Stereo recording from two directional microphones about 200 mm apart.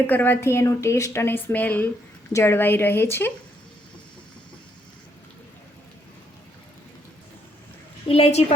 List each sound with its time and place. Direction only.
0.1 s a woman's voice: 10° left (ahead or behind)
8.0 s a woman's voice: 30° left (ahead or behind)